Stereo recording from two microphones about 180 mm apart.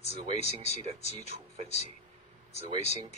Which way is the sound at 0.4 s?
40° left (ahead or behind).